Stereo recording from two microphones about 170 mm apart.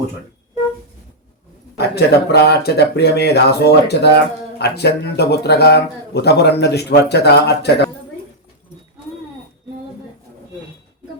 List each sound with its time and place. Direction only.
2.0 s speech: 75° left (ahead or behind)